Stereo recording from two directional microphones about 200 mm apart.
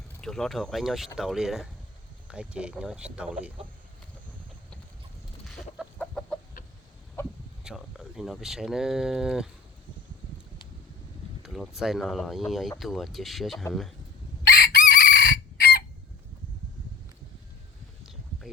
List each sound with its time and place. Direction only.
0.2 s speech: 5° left (ahead or behind)
5.5 s chicken: centre (ahead or behind)
7.6 s speech: 5° right (ahead or behind)
11.4 s speech: centre (ahead or behind)
14.5 s chicken: 50° left (ahead or behind)
18.0 s a sound: centre (ahead or behind)